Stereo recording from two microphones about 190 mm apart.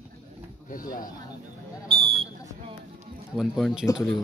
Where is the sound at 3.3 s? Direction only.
Centre (ahead or behind).